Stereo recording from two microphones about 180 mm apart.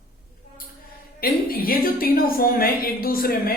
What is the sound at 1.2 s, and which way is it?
Speech, 55° left (ahead or behind).